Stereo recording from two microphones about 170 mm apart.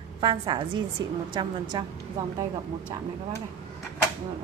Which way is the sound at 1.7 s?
25° right (ahead or behind).